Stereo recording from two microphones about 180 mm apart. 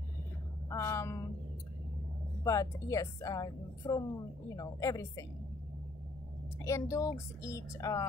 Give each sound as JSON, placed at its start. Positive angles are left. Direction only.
{"t": 0.7, "sound": "a sound", "side_deg": 15}
{"t": 2.4, "sound": "a woman's voice", "side_deg": 20}
{"t": 6.6, "sound": "a woman's voice", "side_deg": 15}